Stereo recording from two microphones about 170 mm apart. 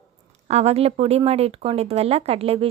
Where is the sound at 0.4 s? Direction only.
40° right (ahead or behind).